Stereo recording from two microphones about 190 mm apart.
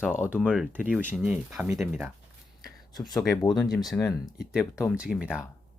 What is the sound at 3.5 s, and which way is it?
Speech, centre (ahead or behind).